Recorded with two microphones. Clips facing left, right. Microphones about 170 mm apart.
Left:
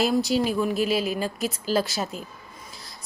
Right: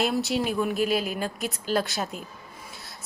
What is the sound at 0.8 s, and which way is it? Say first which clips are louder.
Speech: left 1 dB; 50° right (ahead or behind).